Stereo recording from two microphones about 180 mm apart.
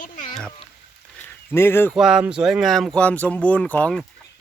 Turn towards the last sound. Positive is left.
turn(degrees=5)  # may be behind; listen again after turning